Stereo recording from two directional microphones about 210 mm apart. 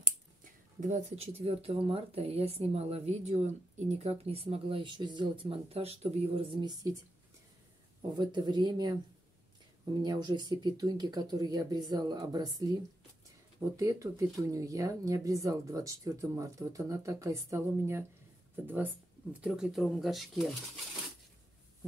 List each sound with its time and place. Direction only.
0.4 s speech: 35° right (ahead or behind); by 7.0 s 20° right (ahead or behind)
8.2 s speech: 20° right (ahead or behind)
10.0 s speech: 20° right (ahead or behind)
13.7 s speech: 15° right (ahead or behind)